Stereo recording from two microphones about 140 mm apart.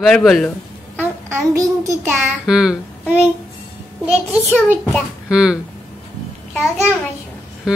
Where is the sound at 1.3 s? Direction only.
25° right (ahead or behind).